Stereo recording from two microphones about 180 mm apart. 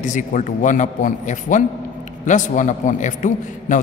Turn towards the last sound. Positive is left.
turn(degrees=45)  # may be behind; listen again after turning